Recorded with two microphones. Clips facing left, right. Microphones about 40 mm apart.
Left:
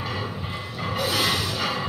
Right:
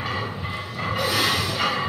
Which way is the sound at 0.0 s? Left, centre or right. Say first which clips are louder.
Right 2 dB; centre.